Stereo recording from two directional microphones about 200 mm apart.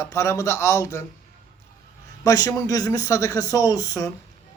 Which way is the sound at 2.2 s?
15° left (ahead or behind).